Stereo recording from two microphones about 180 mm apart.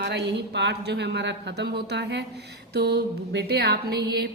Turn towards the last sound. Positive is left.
turn(degrees=-65)  # may be behind; listen again after turning